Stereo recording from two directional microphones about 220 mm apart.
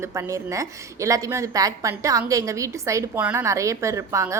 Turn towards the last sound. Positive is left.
turn(degrees=-15)  # may be behind; listen again after turning